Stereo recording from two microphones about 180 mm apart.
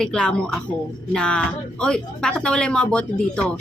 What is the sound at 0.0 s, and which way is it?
A woman's voice, 5° left (ahead or behind).